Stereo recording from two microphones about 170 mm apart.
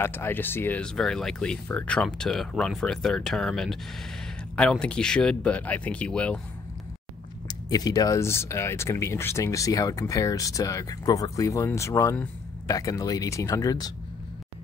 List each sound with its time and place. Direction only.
0.0 s speech: 10° left (ahead or behind)
7.4 s speech: 20° left (ahead or behind)